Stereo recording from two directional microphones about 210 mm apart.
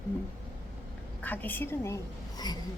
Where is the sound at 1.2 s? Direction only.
10° left (ahead or behind).